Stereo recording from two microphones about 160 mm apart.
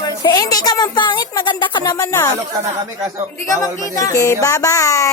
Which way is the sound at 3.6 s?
20° left (ahead or behind).